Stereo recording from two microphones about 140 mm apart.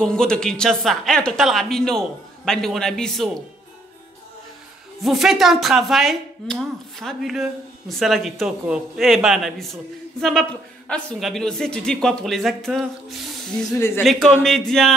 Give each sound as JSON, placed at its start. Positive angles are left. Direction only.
{"t": 0.0, "sound": "a woman's voice", "side_deg": 5}
{"t": 5.0, "sound": "a woman's voice", "side_deg": 0}
{"t": 10.9, "sound": "a woman's voice", "side_deg": 5}
{"t": 13.7, "sound": "speech", "side_deg": 20}
{"t": 14.4, "sound": "a woman's voice", "side_deg": 5}